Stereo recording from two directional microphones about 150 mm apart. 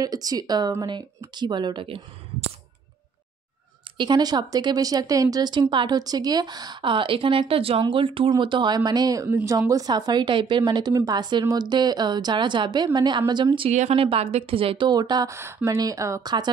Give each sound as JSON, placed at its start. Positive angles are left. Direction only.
{"t": 0.0, "sound": "speech", "side_deg": -25}
{"t": 4.0, "sound": "a woman's voice", "side_deg": -30}
{"t": 13.7, "sound": "speech", "side_deg": -45}